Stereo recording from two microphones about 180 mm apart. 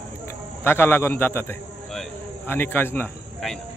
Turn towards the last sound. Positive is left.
turn(degrees=10)  # may be behind; listen again after turning